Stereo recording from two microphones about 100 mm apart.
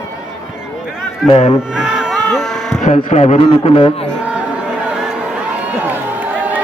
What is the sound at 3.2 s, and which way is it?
Speech, 65° left (ahead or behind).